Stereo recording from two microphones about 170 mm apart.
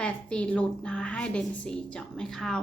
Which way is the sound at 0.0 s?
5° left (ahead or behind).